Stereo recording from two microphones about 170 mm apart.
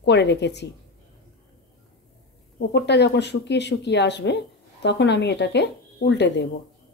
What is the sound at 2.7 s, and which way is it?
Speech, 90° left.